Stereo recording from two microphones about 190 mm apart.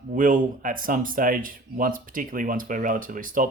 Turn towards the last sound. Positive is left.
turn(degrees=-45)  # may be behind; listen again after turning